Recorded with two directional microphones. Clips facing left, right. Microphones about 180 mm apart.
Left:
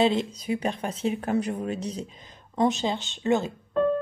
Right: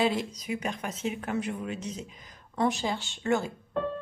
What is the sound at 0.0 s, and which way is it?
A woman's voice, 25° left (ahead or behind).